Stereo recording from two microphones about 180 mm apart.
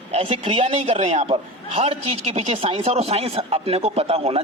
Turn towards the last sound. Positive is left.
turn(degrees=-35)  # may be behind; listen again after turning